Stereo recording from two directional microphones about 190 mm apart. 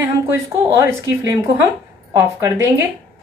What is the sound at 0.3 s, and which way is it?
Speech, 15° right (ahead or behind).